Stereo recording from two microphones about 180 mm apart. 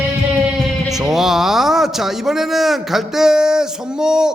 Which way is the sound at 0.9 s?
Centre (ahead or behind).